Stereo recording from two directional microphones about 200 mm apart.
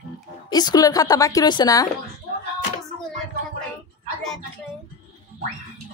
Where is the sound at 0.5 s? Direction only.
20° left (ahead or behind).